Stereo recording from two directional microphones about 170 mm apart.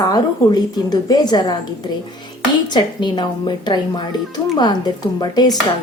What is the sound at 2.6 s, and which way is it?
A woman's voice, 25° left (ahead or behind).